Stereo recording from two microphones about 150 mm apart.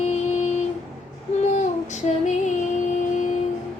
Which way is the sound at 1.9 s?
55° left (ahead or behind).